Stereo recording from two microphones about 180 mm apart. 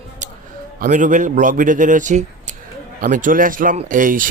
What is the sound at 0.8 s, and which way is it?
A man's voice, 45° right (ahead or behind).